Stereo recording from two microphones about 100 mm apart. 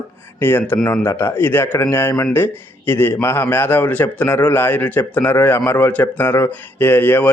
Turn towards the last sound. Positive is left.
turn(degrees=20)  # may be behind; listen again after turning